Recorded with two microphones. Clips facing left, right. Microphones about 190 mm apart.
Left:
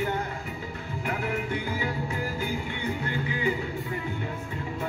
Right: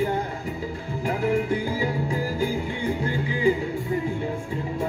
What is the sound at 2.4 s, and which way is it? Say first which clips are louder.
Music: right 5 dB; 30° right (ahead or behind).